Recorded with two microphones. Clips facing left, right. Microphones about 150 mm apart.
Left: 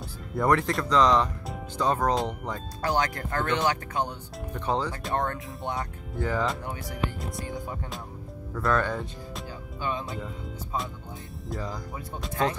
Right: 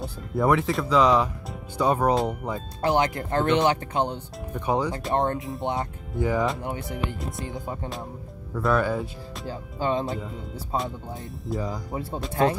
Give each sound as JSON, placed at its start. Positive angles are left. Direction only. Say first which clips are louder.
{"t": 0.4, "sound": "speech", "louder": "right 2 dB", "side_deg": -5}
{"t": 2.8, "sound": "speech", "louder": "right 4 dB", "side_deg": -20}
{"t": 4.6, "sound": "speech", "louder": "right 3 dB", "side_deg": -15}
{"t": 6.1, "sound": "speech", "louder": "right 4 dB", "side_deg": -15}
{"t": 8.5, "sound": "speech", "louder": "right 3 dB", "side_deg": -10}
{"t": 9.5, "sound": "speech", "louder": "right 7 dB", "side_deg": -30}
{"t": 10.0, "sound": "speech", "louder": "right 5 dB", "side_deg": 0}
{"t": 11.5, "sound": "speech", "louder": "right 5 dB", "side_deg": 0}
{"t": 11.9, "sound": "speech", "louder": "right 7 dB", "side_deg": -30}